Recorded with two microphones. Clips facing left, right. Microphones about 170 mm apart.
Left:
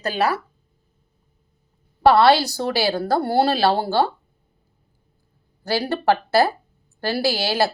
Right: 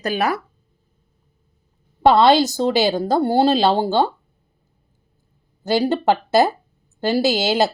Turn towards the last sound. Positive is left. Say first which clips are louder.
# right 3 dB
turn(degrees=-20)  # may be behind; listen again after turning